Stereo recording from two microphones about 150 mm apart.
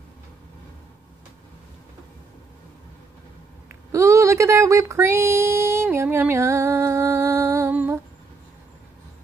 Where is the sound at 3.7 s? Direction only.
20° right (ahead or behind).